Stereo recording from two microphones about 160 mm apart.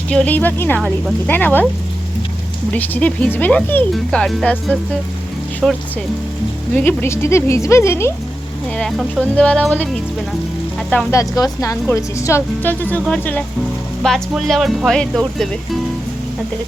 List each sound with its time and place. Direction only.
0.1 s a woman's voice: 10° left (ahead or behind)
2.7 s a woman's voice: 10° left (ahead or behind)
6.7 s a woman's voice: 15° left (ahead or behind)
8.8 s a woman's voice: centre (ahead or behind)
11.1 s a woman's voice: 20° left (ahead or behind); by 15.8 s centre (ahead or behind)